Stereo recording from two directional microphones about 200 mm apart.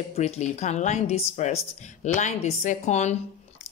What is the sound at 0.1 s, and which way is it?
Speech, 35° left (ahead or behind).